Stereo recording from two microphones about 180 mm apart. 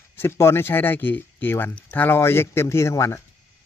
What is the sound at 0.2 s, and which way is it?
Speech, 15° left (ahead or behind).